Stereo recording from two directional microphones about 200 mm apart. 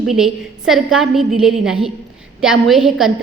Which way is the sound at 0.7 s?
Centre (ahead or behind).